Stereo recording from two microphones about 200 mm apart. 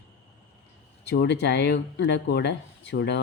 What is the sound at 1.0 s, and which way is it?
Speech, 55° left (ahead or behind).